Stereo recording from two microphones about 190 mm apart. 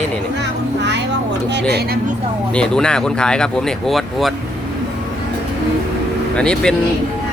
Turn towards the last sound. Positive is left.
turn(degrees=5)  # may be behind; listen again after turning